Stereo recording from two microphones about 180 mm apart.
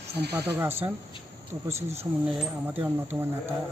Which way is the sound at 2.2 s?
5° right (ahead or behind).